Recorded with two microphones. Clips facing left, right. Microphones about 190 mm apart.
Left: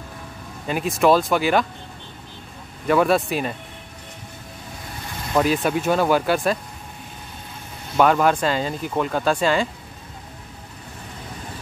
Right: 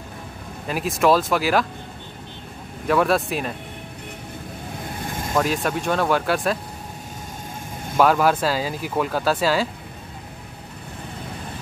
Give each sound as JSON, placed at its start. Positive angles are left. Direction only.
{"t": 0.7, "sound": "speech", "side_deg": 0}
{"t": 2.9, "sound": "speech", "side_deg": 0}
{"t": 5.0, "sound": "vehicle", "side_deg": -50}
{"t": 5.3, "sound": "speech", "side_deg": 0}
{"t": 8.0, "sound": "speech", "side_deg": -5}